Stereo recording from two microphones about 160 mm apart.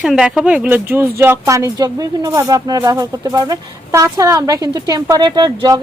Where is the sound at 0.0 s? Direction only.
5° right (ahead or behind).